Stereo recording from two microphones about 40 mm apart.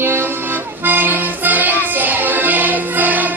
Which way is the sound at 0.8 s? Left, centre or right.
Right.